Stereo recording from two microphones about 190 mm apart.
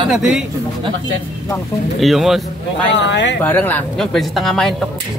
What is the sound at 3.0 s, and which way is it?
Speech, 70° left (ahead or behind).